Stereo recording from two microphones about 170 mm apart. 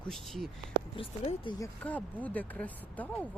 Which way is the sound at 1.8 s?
10° left (ahead or behind).